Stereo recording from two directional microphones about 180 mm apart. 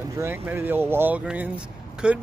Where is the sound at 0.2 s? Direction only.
10° right (ahead or behind).